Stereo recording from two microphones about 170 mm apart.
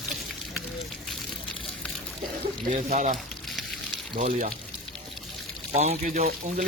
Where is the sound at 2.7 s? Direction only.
45° right (ahead or behind).